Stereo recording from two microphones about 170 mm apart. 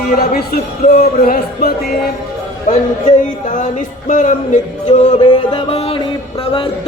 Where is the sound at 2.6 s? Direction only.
45° left (ahead or behind).